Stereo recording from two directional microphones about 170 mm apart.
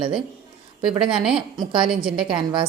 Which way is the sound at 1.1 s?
5° right (ahead or behind).